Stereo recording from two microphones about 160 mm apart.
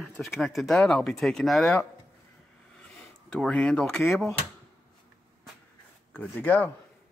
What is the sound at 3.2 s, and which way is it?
Speech, 5° left (ahead or behind).